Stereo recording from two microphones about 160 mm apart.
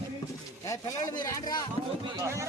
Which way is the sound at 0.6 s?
20° left (ahead or behind).